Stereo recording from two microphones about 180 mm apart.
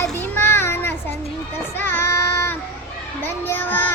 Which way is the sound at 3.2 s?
10° left (ahead or behind).